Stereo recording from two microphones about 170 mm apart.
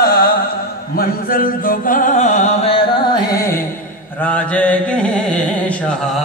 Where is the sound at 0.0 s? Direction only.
60° left (ahead or behind).